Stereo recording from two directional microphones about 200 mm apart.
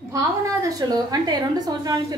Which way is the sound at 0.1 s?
15° right (ahead or behind).